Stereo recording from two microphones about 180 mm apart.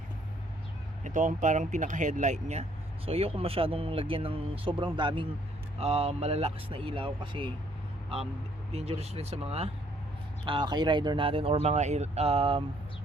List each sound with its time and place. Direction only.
1.0 s speech: 45° right (ahead or behind)